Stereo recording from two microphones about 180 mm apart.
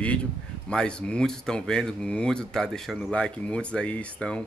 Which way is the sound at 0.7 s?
5° left (ahead or behind).